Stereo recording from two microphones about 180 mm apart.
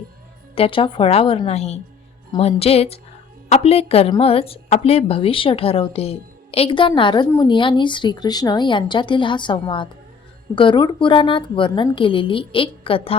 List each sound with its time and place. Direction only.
0.5 s a woman's voice: 30° left (ahead or behind)